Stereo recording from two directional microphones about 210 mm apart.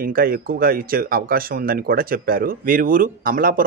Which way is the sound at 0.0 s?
45° right (ahead or behind).